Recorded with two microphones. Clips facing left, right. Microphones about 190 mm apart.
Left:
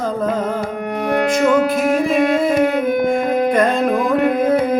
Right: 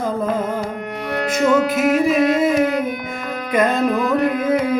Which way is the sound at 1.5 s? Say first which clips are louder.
Left 1 dB; 45° left (ahead or behind).